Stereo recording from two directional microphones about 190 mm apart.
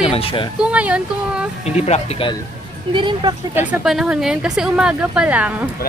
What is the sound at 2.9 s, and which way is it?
Speech, 25° right (ahead or behind).